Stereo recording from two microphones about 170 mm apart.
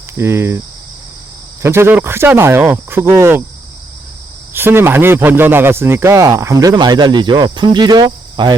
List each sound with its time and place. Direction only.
0.2 s speech: 15° right (ahead or behind)
1.6 s speech: 15° right (ahead or behind)
4.5 s a man's voice: 15° right (ahead or behind)